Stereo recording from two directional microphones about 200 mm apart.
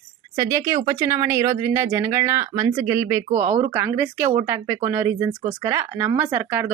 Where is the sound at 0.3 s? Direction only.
15° right (ahead or behind).